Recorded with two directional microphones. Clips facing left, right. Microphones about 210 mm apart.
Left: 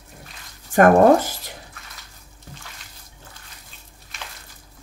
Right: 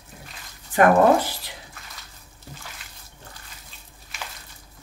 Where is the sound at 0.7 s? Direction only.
45° left (ahead or behind).